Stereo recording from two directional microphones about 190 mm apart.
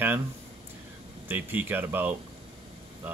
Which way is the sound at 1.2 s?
10° right (ahead or behind).